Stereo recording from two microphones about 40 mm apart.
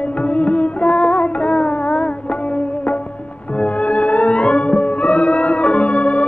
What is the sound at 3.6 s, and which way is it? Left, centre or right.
Music, left.